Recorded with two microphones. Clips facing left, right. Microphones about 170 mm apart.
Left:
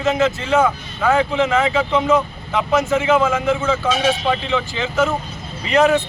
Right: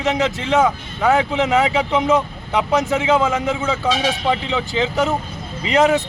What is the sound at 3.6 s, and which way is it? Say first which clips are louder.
Speech: left 1 dB; 15° right (ahead or behind).